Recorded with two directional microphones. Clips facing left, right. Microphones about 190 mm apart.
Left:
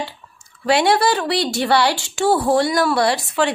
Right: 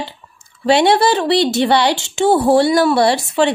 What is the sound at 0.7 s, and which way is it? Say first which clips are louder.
Speech: right 4 dB; 25° right (ahead or behind).